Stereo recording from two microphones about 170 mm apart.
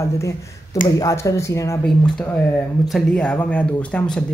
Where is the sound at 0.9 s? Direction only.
20° left (ahead or behind).